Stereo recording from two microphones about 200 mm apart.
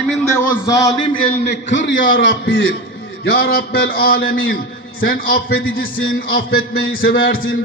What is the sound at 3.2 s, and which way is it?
A man's voice, 55° left (ahead or behind).